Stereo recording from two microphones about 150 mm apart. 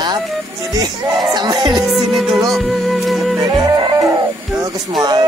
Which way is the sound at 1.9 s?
Centre (ahead or behind).